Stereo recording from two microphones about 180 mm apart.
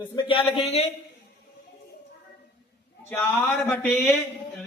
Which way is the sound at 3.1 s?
10° left (ahead or behind).